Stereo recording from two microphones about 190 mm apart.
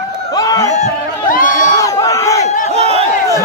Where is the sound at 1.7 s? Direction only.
15° left (ahead or behind).